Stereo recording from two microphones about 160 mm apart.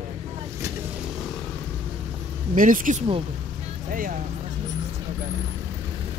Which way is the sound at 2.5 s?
55° right (ahead or behind).